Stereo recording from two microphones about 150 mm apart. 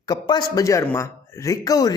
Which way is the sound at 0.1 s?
30° left (ahead or behind).